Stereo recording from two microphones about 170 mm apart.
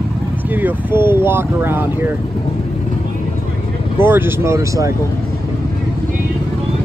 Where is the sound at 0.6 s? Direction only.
10° right (ahead or behind).